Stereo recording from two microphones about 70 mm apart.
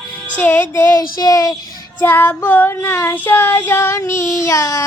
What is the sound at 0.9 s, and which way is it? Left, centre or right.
Speech, left.